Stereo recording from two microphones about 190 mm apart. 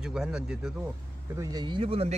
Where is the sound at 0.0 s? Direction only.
5° right (ahead or behind).